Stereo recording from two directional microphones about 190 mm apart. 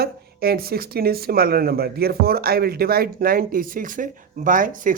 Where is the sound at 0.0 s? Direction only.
55° right (ahead or behind).